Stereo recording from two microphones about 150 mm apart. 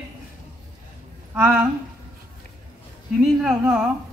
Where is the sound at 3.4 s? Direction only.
5° right (ahead or behind).